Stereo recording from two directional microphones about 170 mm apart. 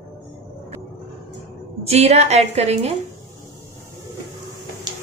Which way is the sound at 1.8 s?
40° right (ahead or behind).